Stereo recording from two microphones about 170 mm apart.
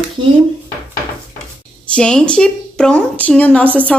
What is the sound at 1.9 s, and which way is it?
A woman's voice, 5° left (ahead or behind).